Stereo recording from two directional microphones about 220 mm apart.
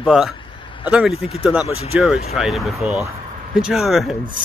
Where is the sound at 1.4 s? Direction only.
Centre (ahead or behind).